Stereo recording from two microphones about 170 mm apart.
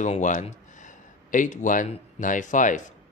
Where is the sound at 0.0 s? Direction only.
45° left (ahead or behind).